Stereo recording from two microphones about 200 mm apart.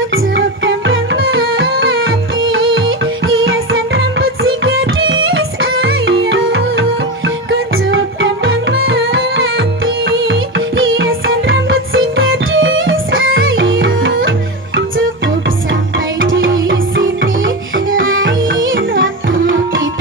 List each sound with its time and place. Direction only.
0.1 s music: 70° right (ahead or behind)
16.2 s music: 75° right (ahead or behind)